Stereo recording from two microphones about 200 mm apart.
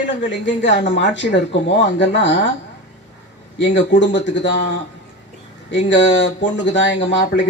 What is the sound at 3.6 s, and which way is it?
Speech, 65° left (ahead or behind).